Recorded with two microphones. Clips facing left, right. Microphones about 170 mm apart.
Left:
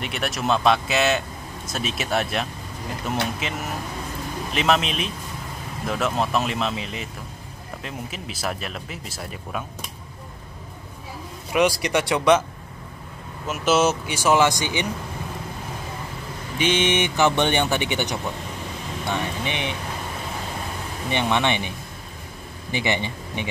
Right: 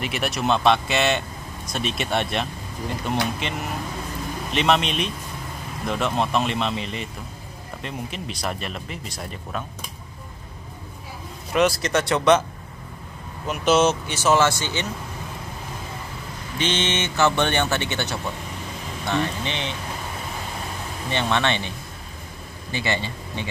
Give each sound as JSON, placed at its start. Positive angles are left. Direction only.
{"t": 0.0, "sound": "speech", "side_deg": 0}
{"t": 11.5, "sound": "speech", "side_deg": 15}
{"t": 13.5, "sound": "speech", "side_deg": 5}
{"t": 16.5, "sound": "speech", "side_deg": 10}
{"t": 21.1, "sound": "speech", "side_deg": 15}